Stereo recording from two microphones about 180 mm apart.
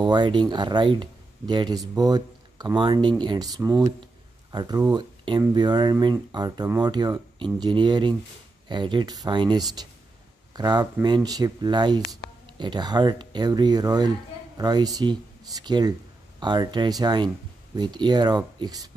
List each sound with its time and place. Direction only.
0.0 s speech: 25° right (ahead or behind)